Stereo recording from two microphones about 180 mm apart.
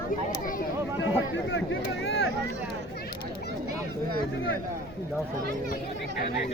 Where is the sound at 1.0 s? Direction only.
90° left.